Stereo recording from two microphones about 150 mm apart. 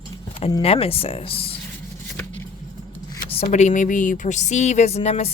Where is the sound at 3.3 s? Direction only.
45° left (ahead or behind).